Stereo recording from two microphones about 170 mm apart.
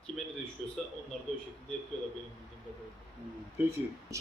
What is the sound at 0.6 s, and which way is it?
Speech, centre (ahead or behind).